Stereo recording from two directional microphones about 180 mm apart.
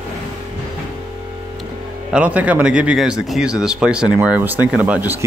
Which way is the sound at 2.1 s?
10° right (ahead or behind).